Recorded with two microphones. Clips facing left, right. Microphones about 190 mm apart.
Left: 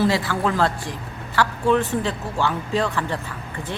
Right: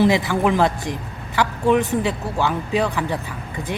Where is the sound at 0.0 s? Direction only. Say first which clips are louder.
Right 4 dB; 20° right (ahead or behind).